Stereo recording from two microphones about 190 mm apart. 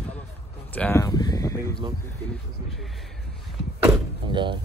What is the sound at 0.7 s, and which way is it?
Speech, 10° left (ahead or behind).